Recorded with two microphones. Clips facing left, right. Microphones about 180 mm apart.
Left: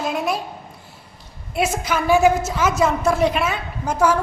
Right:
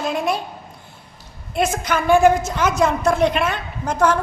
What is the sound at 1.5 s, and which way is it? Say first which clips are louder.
A woman's voice: right 1 dB; 5° left (ahead or behind).